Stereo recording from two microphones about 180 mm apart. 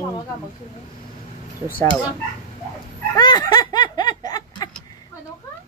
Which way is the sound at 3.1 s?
25° left (ahead or behind).